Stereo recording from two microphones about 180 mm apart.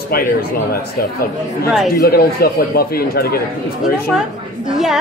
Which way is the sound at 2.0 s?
60° left (ahead or behind).